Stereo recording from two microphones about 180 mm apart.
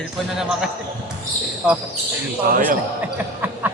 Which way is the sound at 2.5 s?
50° right (ahead or behind).